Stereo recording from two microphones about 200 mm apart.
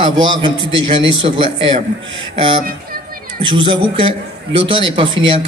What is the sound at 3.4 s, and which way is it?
A man's voice, 25° right (ahead or behind).